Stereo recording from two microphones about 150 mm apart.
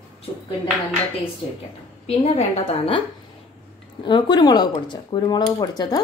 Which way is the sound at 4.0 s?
30° left (ahead or behind).